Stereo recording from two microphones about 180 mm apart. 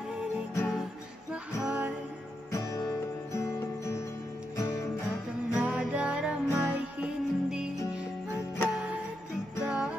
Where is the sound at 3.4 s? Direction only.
15° left (ahead or behind).